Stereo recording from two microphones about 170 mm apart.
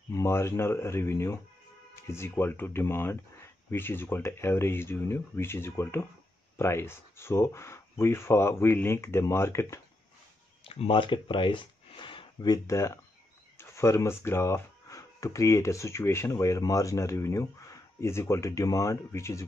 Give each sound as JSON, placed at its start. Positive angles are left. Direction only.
{"t": 0.1, "sound": "speech", "side_deg": 15}
{"t": 10.6, "sound": "speech", "side_deg": 35}